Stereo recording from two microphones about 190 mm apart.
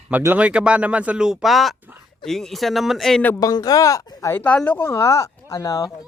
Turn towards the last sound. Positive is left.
turn(degrees=20)  # may be behind; listen again after turning